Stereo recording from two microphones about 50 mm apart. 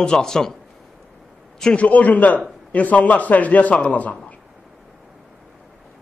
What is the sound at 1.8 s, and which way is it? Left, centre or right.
A man's voice, left.